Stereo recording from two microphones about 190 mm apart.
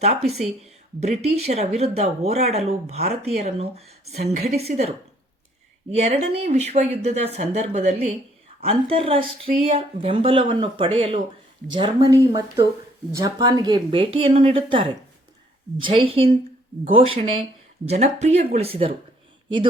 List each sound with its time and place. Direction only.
0.9 s speech: 35° right (ahead or behind)